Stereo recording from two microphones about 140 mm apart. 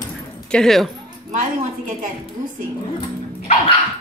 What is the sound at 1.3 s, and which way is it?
Speech, 70° right (ahead or behind).